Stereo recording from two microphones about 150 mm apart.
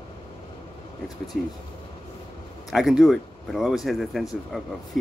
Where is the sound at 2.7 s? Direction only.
Centre (ahead or behind).